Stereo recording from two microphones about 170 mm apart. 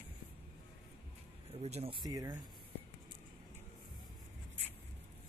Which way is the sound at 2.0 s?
20° right (ahead or behind).